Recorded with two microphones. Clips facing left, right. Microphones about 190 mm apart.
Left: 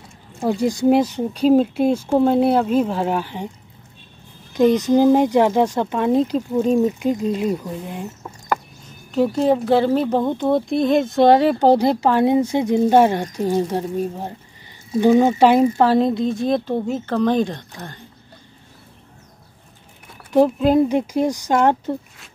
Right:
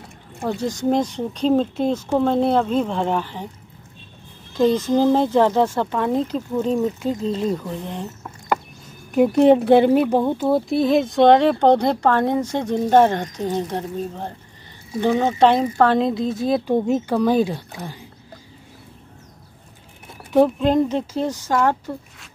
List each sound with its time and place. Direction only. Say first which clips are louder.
0.4 s speech: left 5 dB; 10° left (ahead or behind)
4.6 s speech: left 2 dB; 15° left (ahead or behind)
9.4 s speech: right 5 dB; 20° right (ahead or behind); by 16.6 s centre (ahead or behind)
16.6 s speech: right 3 dB; 15° right (ahead or behind)
20.3 s speech: left 1 dB; 5° left (ahead or behind); by 21.9 s 20° left (ahead or behind)